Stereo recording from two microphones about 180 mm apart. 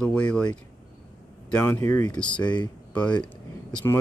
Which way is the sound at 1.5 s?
10° left (ahead or behind).